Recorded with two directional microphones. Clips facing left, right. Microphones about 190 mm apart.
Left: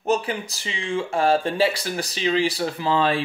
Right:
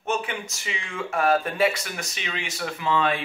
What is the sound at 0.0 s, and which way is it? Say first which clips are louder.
Speech: left 5 dB; 35° left (ahead or behind).